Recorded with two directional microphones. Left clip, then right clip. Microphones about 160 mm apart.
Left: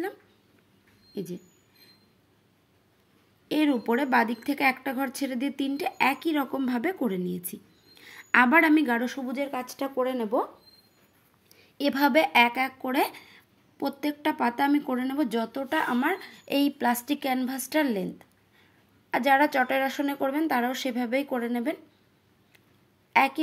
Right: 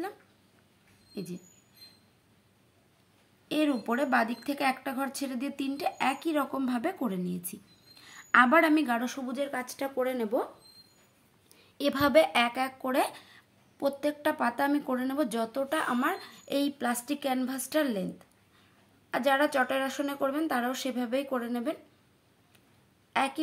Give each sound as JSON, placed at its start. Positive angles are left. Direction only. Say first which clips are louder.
{"t": 1.1, "sound": "speech", "louder": "left 5 dB", "side_deg": 20}
{"t": 3.4, "sound": "speech", "louder": "left 4 dB", "side_deg": 20}
{"t": 11.8, "sound": "speech", "louder": "left 1 dB", "side_deg": 10}
{"t": 23.1, "sound": "a woman's voice", "louder": "left 7 dB", "side_deg": 25}